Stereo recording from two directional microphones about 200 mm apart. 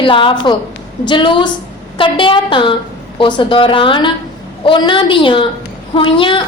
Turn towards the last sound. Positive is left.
turn(degrees=25)  # may be behind; listen again after turning